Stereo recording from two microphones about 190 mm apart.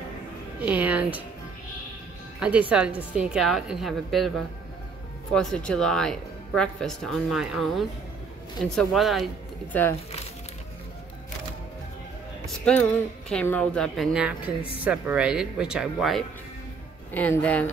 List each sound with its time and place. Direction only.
0.6 s speech: 10° right (ahead or behind)
2.4 s speech: 5° right (ahead or behind)
5.3 s speech: 5° left (ahead or behind)
12.4 s speech: 5° left (ahead or behind)
14.6 s a woman's voice: 30° left (ahead or behind)
14.9 s speech: 5° right (ahead or behind)